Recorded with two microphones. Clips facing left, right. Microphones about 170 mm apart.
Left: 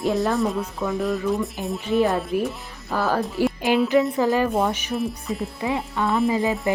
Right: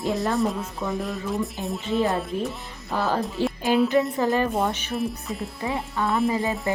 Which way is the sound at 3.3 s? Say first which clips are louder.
Left 2 dB; 15° left (ahead or behind).